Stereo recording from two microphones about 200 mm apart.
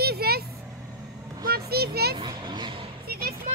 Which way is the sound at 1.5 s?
50° right (ahead or behind).